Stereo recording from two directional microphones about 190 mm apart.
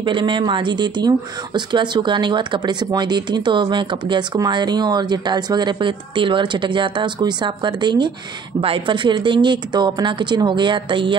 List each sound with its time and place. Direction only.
0.0 s speech: 25° right (ahead or behind)